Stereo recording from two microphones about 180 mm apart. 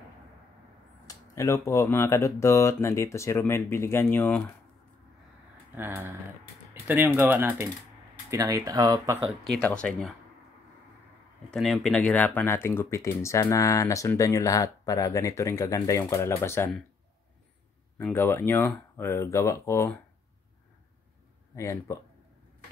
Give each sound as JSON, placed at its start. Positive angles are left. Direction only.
{"t": 1.0, "sound": "speech", "side_deg": 15}
{"t": 5.8, "sound": "speech", "side_deg": -10}
{"t": 9.4, "sound": "speech", "side_deg": 5}
{"t": 11.5, "sound": "speech", "side_deg": 0}
{"t": 17.9, "sound": "speech", "side_deg": 10}
{"t": 21.5, "sound": "speech", "side_deg": 15}